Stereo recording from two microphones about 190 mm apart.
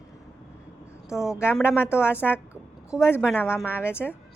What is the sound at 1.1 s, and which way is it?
Speech, centre (ahead or behind).